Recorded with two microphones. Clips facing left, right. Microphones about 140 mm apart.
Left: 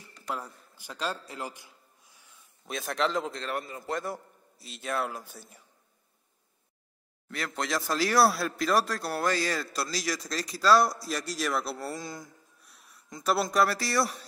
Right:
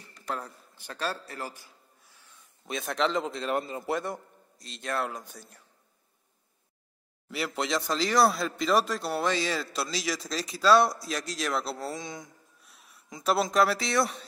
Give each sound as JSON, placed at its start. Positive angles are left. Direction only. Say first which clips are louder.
{"t": 0.3, "sound": "a man's voice", "louder": "right 1 dB", "side_deg": 10}
{"t": 2.6, "sound": "speech", "louder": "right 1 dB", "side_deg": 0}
{"t": 3.4, "sound": "a man's voice", "louder": "right 5 dB", "side_deg": -25}
{"t": 3.8, "sound": "a man's voice", "louder": "right 2 dB", "side_deg": 0}
{"t": 7.2, "sound": "speech", "louder": "right 2 dB", "side_deg": -5}